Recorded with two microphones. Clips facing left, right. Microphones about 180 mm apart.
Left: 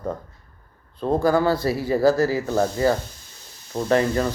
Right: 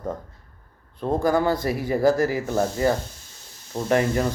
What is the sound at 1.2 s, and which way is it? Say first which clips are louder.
Speech: left 2 dB; 20° right (ahead or behind).